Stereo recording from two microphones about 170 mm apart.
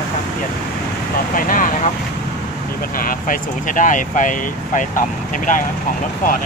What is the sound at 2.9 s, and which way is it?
Speech, 55° left (ahead or behind).